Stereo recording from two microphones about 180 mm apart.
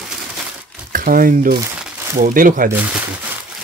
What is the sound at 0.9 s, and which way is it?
Speech, 50° right (ahead or behind).